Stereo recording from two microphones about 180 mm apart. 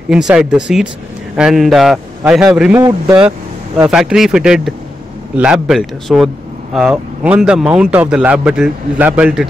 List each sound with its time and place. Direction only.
0.1 s a man's voice: 5° right (ahead or behind)